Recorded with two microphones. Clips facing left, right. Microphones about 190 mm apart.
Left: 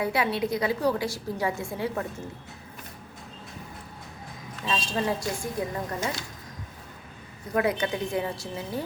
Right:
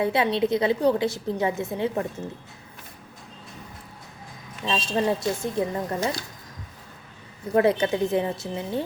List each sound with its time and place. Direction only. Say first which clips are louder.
0.0 s a woman's voice: right 4 dB; 25° right (ahead or behind)
4.6 s a woman's voice: right 4 dB; 25° right (ahead or behind)
7.5 s a woman's voice: right 5 dB; 30° right (ahead or behind)